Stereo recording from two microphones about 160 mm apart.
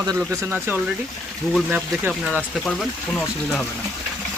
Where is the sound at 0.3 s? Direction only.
10° right (ahead or behind).